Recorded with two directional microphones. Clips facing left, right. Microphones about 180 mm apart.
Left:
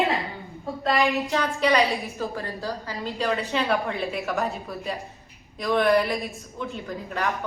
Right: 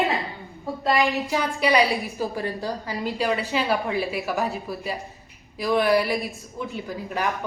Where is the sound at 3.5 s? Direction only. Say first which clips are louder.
Right 1 dB; centre (ahead or behind).